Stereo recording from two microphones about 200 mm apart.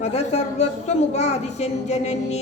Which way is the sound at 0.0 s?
35° left (ahead or behind).